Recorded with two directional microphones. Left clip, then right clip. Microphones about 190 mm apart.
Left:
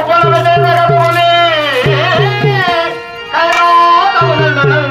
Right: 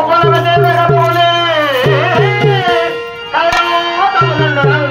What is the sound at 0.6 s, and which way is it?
Music, 30° left (ahead or behind).